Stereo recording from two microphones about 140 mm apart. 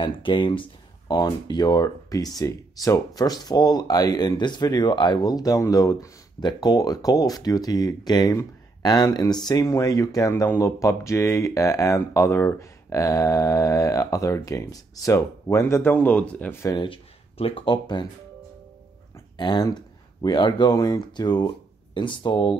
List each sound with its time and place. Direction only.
0.0 s speech: 35° left (ahead or behind); by 16.7 s 15° left (ahead or behind)
16.7 s speech: 35° left (ahead or behind)
19.3 s speech: 30° left (ahead or behind)